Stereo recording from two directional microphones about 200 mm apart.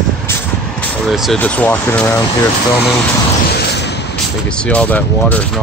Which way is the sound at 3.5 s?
55° left (ahead or behind).